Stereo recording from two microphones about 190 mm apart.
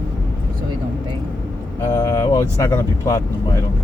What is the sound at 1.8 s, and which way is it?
Speech, 15° left (ahead or behind).